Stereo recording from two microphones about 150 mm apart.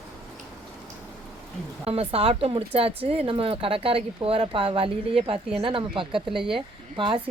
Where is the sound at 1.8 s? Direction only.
40° right (ahead or behind).